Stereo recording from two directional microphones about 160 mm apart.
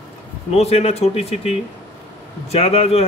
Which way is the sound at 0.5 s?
40° left (ahead or behind).